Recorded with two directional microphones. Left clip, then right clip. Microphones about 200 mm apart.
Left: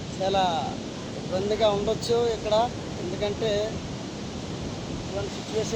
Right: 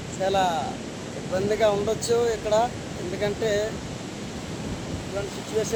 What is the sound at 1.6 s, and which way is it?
Speech, centre (ahead or behind).